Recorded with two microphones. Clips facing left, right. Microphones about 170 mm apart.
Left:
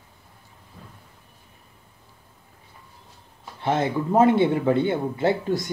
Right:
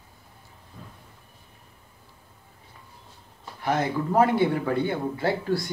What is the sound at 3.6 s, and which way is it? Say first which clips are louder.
Speech: left 2 dB; 25° left (ahead or behind).